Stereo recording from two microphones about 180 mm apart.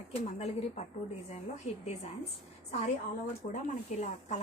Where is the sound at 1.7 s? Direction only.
40° left (ahead or behind).